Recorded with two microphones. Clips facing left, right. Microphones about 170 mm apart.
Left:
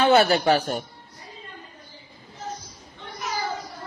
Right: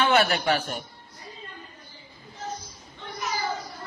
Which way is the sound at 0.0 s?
35° left (ahead or behind).